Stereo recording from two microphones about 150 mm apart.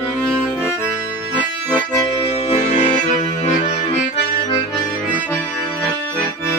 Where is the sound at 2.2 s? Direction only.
45° left (ahead or behind).